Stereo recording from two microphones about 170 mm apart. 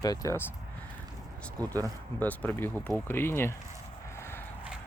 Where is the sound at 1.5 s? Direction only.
20° right (ahead or behind).